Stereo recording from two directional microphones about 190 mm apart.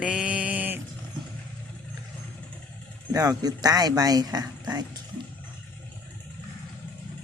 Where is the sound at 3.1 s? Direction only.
20° right (ahead or behind).